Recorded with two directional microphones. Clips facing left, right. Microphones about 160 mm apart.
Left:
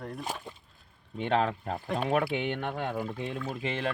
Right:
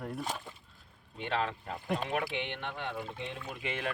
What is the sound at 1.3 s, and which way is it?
Speech, 45° left (ahead or behind).